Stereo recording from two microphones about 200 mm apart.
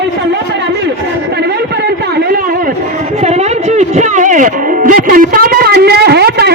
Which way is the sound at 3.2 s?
35° right (ahead or behind).